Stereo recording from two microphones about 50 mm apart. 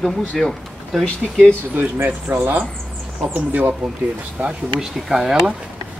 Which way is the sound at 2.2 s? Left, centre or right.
Right.